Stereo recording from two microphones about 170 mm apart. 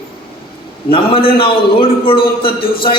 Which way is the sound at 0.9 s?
35° left (ahead or behind).